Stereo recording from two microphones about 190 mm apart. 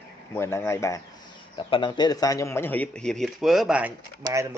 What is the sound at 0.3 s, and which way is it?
A man's voice, 10° left (ahead or behind).